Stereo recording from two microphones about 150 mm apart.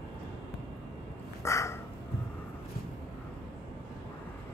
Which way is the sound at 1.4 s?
20° left (ahead or behind).